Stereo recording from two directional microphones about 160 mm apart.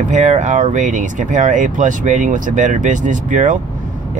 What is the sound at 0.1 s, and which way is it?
Speech, 50° right (ahead or behind).